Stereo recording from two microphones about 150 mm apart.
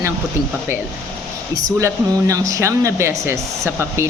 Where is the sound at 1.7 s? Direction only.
20° right (ahead or behind).